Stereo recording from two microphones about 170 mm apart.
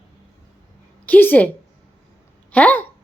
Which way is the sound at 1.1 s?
10° left (ahead or behind).